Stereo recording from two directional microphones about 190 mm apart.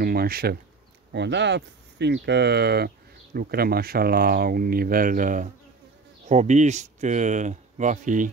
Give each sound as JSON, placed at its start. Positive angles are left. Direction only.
{"t": 0.0, "sound": "speech", "side_deg": -55}
{"t": 1.1, "sound": "speech", "side_deg": -65}